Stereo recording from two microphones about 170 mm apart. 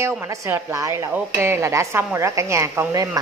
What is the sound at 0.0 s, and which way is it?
A woman's voice, 15° right (ahead or behind).